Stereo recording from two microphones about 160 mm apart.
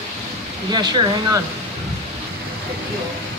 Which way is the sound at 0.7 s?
25° right (ahead or behind).